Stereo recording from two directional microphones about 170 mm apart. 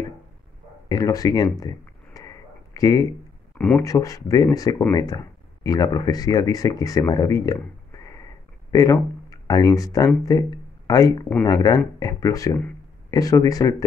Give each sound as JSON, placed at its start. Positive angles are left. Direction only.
{"t": 0.8, "sound": "a sound", "side_deg": 20}
{"t": 3.5, "sound": "speech", "side_deg": 5}
{"t": 3.8, "sound": "speech", "side_deg": 20}
{"t": 8.7, "sound": "speech", "side_deg": 20}